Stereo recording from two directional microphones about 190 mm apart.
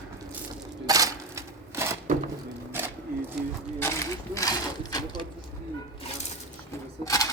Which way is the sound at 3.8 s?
15° left (ahead or behind).